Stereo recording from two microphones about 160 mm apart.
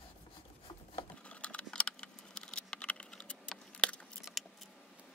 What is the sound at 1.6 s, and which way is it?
Computer keyboard, 5° left (ahead or behind).